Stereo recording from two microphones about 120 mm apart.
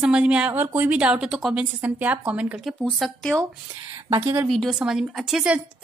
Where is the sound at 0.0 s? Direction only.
10° right (ahead or behind).